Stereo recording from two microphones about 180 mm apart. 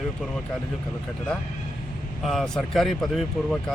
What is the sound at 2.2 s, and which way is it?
Speech, centre (ahead or behind).